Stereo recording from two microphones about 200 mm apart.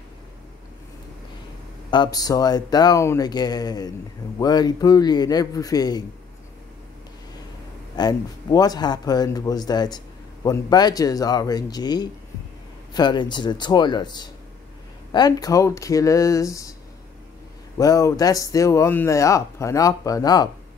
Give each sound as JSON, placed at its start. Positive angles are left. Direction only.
{"t": 1.9, "sound": "a man's voice", "side_deg": 20}
{"t": 7.9, "sound": "a man's voice", "side_deg": 20}
{"t": 17.7, "sound": "speech", "side_deg": 15}